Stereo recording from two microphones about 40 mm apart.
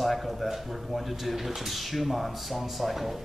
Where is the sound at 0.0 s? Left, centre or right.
Centre.